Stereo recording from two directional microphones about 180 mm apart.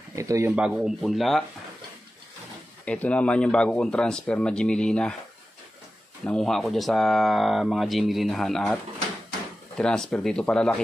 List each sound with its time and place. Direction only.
0.1 s speech: 15° right (ahead or behind)
0.6 s speech: 5° right (ahead or behind)
2.8 s speech: 5° left (ahead or behind)
6.2 s speech: centre (ahead or behind)
9.8 s speech: 5° left (ahead or behind)